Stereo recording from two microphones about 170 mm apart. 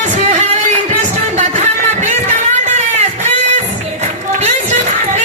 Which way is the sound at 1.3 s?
45° right (ahead or behind).